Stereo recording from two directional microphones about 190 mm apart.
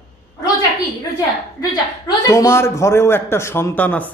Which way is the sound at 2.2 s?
15° left (ahead or behind).